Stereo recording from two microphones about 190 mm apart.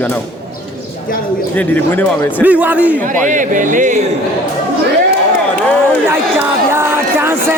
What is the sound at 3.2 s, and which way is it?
Speech, 40° right (ahead or behind).